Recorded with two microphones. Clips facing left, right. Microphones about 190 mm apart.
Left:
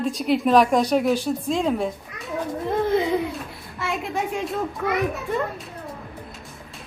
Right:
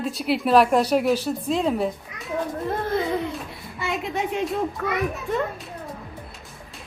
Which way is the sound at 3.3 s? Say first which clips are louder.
Even; centre (ahead or behind).